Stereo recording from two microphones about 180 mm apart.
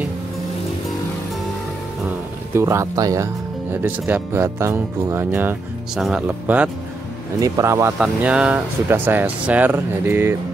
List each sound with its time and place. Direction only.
2.5 s speech: 15° right (ahead or behind)